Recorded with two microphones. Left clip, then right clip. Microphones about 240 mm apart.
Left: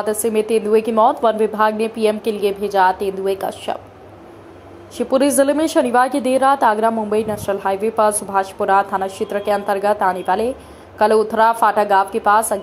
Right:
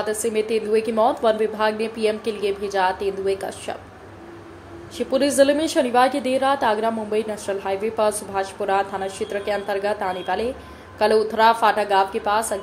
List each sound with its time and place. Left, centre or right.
0.0 s a woman's voice: centre
4.9 s a woman's voice: centre